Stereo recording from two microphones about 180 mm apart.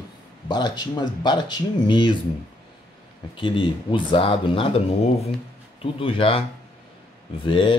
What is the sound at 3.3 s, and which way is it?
Speech, 25° left (ahead or behind).